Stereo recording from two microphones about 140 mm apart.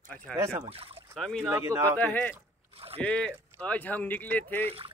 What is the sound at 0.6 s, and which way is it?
Speech, 45° right (ahead or behind).